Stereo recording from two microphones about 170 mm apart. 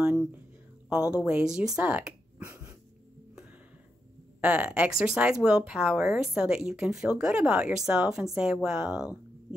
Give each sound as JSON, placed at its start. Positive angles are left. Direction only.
{"t": 0.0, "sound": "a sound", "side_deg": -5}
{"t": 0.8, "sound": "speech", "side_deg": -5}
{"t": 4.4, "sound": "speech", "side_deg": -5}